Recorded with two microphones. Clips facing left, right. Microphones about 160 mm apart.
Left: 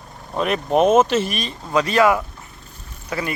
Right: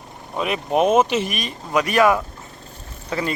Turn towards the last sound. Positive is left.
turn(degrees=-25)  # may be behind; listen again after turning